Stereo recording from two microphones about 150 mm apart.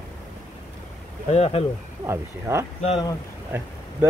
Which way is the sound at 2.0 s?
20° right (ahead or behind).